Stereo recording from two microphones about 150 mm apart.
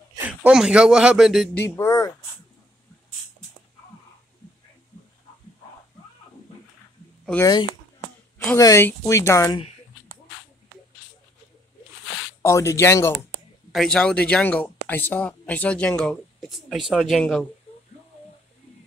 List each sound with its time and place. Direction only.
0.2 s speech: 10° right (ahead or behind)
1.5 s speech: 15° left (ahead or behind)
8.5 s speech: 20° left (ahead or behind)
12.4 s speech: 20° left (ahead or behind)
13.7 s speech: centre (ahead or behind)